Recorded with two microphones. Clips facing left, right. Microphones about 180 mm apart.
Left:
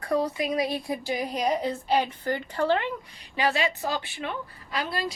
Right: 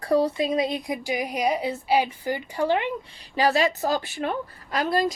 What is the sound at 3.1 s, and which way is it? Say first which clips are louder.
A woman's voice: right 5 dB; 35° right (ahead or behind).